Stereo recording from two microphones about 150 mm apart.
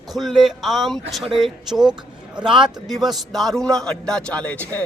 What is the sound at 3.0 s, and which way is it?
A man's voice, centre (ahead or behind).